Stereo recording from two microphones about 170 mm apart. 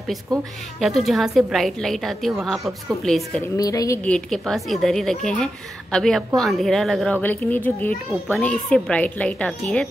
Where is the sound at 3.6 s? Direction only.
20° left (ahead or behind).